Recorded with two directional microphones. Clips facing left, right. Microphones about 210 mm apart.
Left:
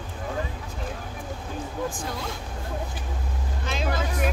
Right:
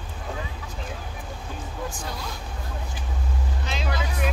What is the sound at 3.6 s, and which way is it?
Vehicle, 50° left (ahead or behind).